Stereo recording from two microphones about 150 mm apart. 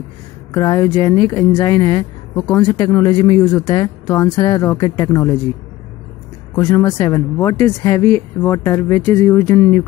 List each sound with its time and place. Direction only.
0.5 s speech: 20° left (ahead or behind)
6.5 s speech: 15° left (ahead or behind)